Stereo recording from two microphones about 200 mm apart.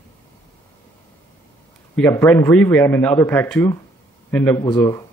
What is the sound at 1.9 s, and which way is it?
A man's voice, 10° left (ahead or behind).